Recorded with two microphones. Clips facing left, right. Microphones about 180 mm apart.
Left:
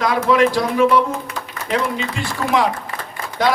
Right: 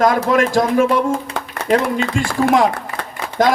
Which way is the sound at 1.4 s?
70° right (ahead or behind).